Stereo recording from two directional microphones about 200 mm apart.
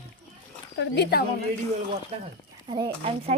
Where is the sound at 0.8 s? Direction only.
55° left (ahead or behind).